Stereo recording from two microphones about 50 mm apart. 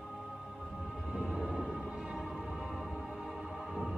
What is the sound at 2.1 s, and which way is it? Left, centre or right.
Music, centre.